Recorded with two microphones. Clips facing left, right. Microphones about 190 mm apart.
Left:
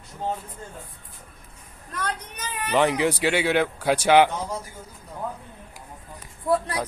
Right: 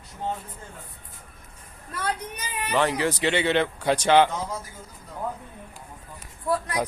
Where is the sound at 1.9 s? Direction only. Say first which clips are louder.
Right 2 dB; 10° right (ahead or behind).